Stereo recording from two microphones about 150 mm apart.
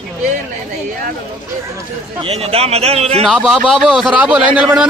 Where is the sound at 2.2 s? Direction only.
40° right (ahead or behind).